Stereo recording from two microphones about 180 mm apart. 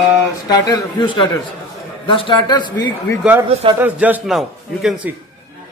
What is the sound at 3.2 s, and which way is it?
A man's voice, 10° right (ahead or behind).